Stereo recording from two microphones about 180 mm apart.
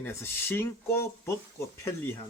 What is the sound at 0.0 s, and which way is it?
Speech, 15° left (ahead or behind).